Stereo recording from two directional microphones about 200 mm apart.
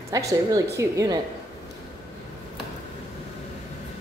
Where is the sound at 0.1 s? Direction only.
15° right (ahead or behind).